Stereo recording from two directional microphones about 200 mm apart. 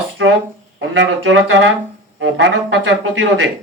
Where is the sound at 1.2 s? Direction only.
70° right (ahead or behind).